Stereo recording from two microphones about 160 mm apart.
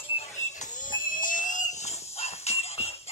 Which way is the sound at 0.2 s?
50° left (ahead or behind).